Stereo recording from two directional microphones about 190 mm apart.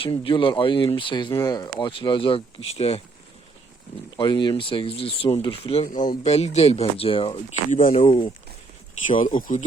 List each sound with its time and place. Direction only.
0.0 s speech: 30° left (ahead or behind)
4.2 s speech: 25° left (ahead or behind)
5.9 s speech: 45° left (ahead or behind)
8.0 s speech: 25° left (ahead or behind)
9.0 s speech: 40° left (ahead or behind)